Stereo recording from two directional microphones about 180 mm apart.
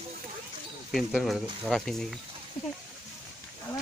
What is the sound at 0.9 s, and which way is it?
Speech, centre (ahead or behind).